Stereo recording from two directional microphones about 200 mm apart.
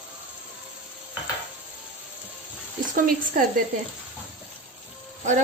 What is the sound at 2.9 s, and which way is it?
Speech, 45° right (ahead or behind).